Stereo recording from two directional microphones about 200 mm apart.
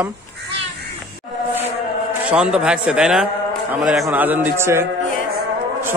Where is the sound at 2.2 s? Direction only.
5° right (ahead or behind).